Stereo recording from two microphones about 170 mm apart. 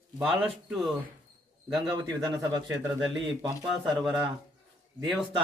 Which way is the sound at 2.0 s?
25° right (ahead or behind).